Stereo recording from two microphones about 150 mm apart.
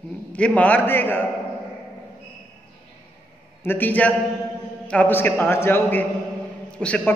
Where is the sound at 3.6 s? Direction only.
15° left (ahead or behind).